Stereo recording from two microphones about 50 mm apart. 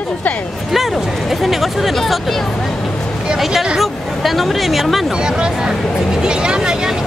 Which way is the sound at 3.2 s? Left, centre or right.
Centre.